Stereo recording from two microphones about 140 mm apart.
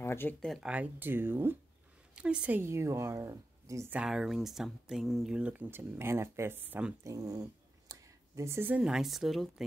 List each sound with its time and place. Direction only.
0.0 s a sound: 15° left (ahead or behind)
0.4 s speech: centre (ahead or behind); by 3.9 s 20° right (ahead or behind)
3.9 s speech: 5° right (ahead or behind)
7.1 s speech: 25° right (ahead or behind); by 9.5 s centre (ahead or behind)